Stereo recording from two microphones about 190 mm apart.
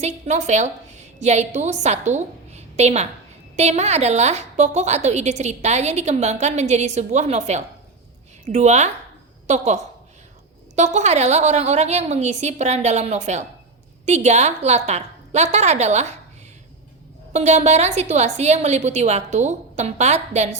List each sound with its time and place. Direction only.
0.0 s a woman's voice: 40° right (ahead or behind)
17.3 s a woman's voice: 35° right (ahead or behind)